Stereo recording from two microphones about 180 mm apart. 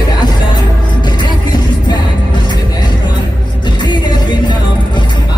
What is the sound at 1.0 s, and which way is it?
Music, 25° left (ahead or behind).